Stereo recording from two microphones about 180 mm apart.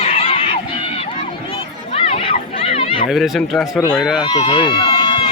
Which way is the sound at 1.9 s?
35° left (ahead or behind).